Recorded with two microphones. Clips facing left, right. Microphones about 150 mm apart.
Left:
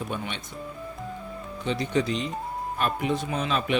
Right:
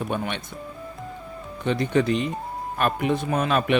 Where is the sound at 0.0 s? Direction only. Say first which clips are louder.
Right 5 dB; 55° right (ahead or behind).